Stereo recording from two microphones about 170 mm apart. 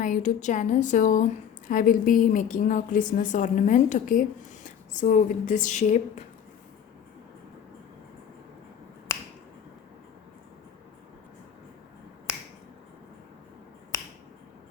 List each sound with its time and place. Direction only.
0.0 s speech: 50° left (ahead or behind)